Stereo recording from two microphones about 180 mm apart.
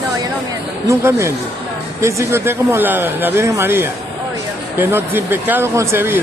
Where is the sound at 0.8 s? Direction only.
15° right (ahead or behind).